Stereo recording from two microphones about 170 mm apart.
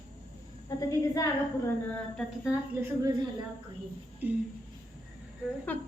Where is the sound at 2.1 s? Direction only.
Centre (ahead or behind).